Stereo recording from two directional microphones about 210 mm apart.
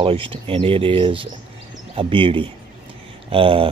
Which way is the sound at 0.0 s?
25° right (ahead or behind).